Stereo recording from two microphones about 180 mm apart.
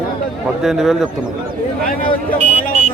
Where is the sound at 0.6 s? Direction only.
Centre (ahead or behind).